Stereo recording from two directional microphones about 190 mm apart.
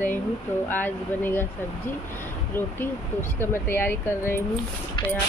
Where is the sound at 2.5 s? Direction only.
10° left (ahead or behind).